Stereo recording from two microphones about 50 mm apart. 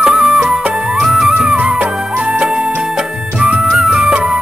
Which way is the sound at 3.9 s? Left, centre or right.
Right.